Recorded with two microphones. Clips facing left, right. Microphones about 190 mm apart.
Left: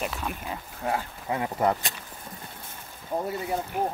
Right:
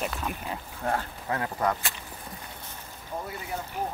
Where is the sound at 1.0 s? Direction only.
10° left (ahead or behind).